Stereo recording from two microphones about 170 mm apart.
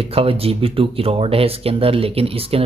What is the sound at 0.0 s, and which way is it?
Speech, 35° right (ahead or behind).